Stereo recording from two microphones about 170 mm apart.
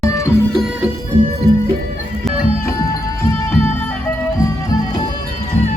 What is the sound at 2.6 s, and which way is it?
Music, 15° left (ahead or behind).